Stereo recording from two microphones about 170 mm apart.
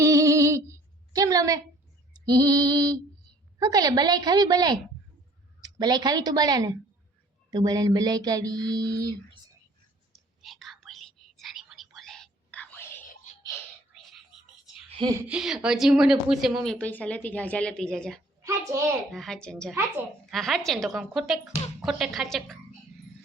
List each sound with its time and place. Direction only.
0.0 s a sound: 20° right (ahead or behind)
2.2 s a woman's voice: 25° right (ahead or behind)
10.1 s whispering: centre (ahead or behind)
14.8 s a sound: 30° right (ahead or behind)
15.3 s a woman's voice: 5° right (ahead or behind)
18.4 s a child's voice: 20° right (ahead or behind)
19.1 s a woman's voice: centre (ahead or behind)